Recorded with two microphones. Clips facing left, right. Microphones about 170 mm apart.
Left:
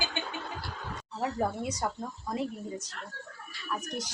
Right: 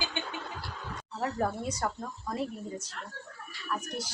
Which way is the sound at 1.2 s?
15° left (ahead or behind).